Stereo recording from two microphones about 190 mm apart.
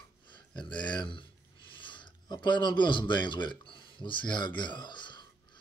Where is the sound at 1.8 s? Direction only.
25° left (ahead or behind).